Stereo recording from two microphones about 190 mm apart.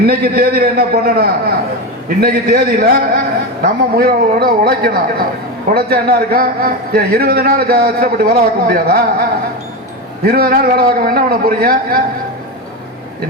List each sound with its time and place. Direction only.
0.0 s a man's voice: 55° right (ahead or behind)
10.2 s a man's voice: 50° right (ahead or behind)